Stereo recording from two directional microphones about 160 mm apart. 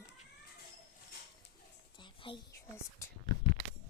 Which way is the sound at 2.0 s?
30° left (ahead or behind).